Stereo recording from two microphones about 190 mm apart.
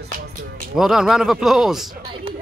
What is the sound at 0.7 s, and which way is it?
A man's voice, centre (ahead or behind).